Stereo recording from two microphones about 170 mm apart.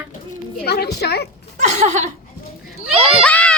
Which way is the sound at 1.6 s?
45° right (ahead or behind).